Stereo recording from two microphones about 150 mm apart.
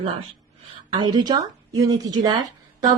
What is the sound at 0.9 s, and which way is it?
Speech, 30° right (ahead or behind).